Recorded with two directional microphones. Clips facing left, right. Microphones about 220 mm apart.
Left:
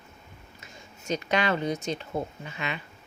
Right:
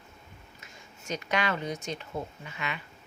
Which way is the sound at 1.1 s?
30° left (ahead or behind).